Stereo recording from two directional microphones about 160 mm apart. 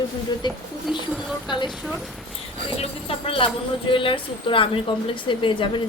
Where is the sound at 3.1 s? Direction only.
35° left (ahead or behind).